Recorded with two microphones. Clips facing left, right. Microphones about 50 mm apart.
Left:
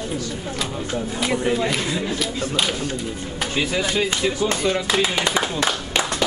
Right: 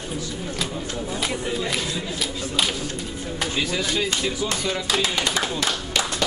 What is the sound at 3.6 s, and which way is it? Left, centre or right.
Speech, centre.